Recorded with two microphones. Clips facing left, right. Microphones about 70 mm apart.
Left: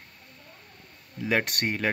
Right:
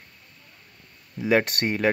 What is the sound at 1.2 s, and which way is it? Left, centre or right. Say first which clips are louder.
Speech: right 5 dB; centre.